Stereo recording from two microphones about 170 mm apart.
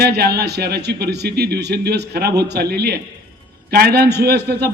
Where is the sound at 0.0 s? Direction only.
70° right (ahead or behind).